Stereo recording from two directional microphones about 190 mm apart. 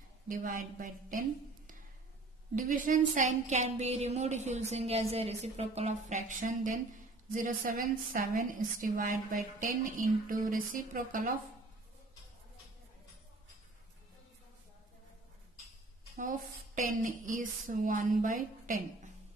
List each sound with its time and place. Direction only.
0.3 s a woman's voice: 45° right (ahead or behind)
2.5 s a woman's voice: 45° right (ahead or behind)
16.2 s a woman's voice: 45° right (ahead or behind)